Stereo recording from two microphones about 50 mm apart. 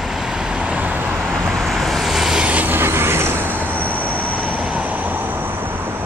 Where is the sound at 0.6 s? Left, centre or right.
Right.